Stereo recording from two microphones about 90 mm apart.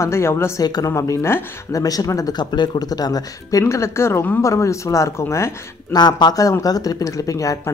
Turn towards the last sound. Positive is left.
turn(degrees=40)  # may be behind; listen again after turning